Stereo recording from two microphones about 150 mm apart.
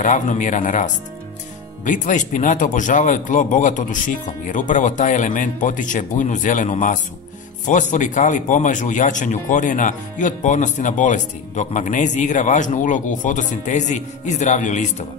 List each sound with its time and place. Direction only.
0.0 s speech: 55° left (ahead or behind)